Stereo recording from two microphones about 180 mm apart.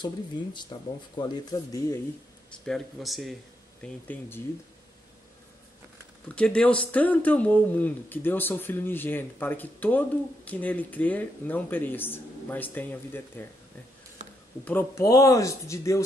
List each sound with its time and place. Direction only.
0.0 s speech: 25° left (ahead or behind)
2.5 s speech: centre (ahead or behind)
6.2 s speech: 5° left (ahead or behind)
14.6 s speech: 10° left (ahead or behind)